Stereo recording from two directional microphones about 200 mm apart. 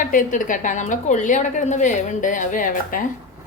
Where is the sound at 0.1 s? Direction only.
40° left (ahead or behind).